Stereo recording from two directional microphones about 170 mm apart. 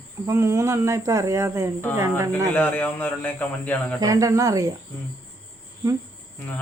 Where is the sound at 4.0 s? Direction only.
20° right (ahead or behind).